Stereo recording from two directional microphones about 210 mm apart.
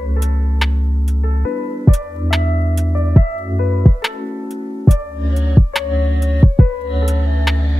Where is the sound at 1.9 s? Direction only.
Centre (ahead or behind).